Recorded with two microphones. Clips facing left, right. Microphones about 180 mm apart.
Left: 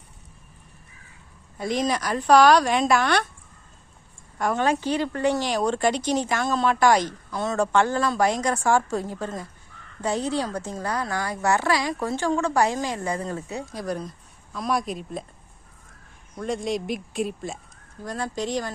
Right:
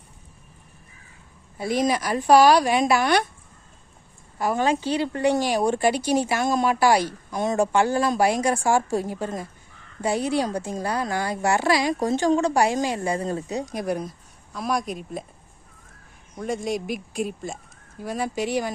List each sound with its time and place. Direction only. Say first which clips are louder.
1.5 s a woman's voice: right 2 dB; 5° right (ahead or behind)
4.4 s a woman's voice: right 1 dB; 5° right (ahead or behind)
13.0 s speech: right 3 dB; 30° right (ahead or behind)
13.6 s a woman's voice: right 3 dB; 15° right (ahead or behind)
14.5 s speech: even; centre (ahead or behind)
16.4 s a woman's voice: even; centre (ahead or behind)